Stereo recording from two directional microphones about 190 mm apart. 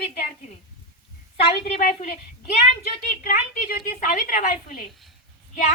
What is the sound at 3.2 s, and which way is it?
A woman's voice, 50° left (ahead or behind).